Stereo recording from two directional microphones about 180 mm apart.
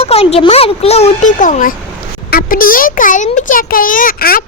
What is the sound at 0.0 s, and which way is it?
A child's voice, 35° left (ahead or behind).